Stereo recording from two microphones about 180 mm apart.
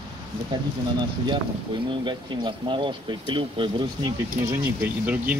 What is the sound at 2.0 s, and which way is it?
Speech, 25° right (ahead or behind).